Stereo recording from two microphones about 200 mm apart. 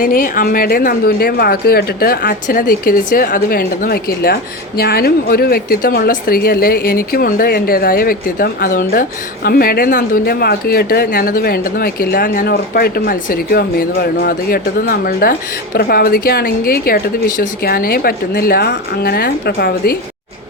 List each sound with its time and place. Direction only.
0.0 s speech: 45° left (ahead or behind)